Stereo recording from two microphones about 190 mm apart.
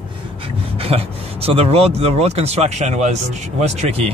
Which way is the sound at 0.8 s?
30° right (ahead or behind).